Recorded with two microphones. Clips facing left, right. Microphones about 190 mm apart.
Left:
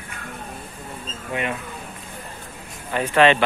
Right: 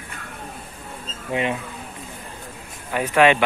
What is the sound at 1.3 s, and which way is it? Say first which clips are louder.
Speech: right 3 dB; 25° right (ahead or behind).